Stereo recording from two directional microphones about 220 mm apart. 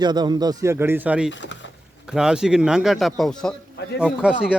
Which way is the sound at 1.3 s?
55° left (ahead or behind).